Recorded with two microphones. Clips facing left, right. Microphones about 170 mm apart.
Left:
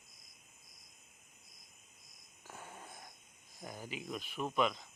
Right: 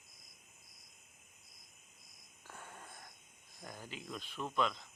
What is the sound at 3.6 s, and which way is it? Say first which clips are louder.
Speech: left 4 dB; 10° left (ahead or behind).